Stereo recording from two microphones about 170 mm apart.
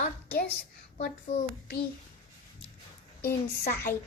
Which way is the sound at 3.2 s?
65° left (ahead or behind).